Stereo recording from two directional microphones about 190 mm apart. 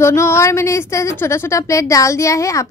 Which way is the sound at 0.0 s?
15° left (ahead or behind).